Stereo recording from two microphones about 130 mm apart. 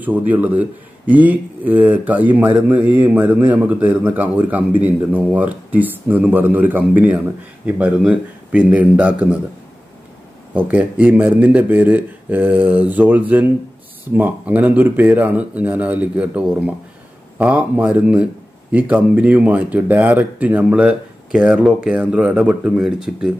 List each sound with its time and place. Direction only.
0.0 s speech: 15° right (ahead or behind)
10.5 s speech: 10° right (ahead or behind)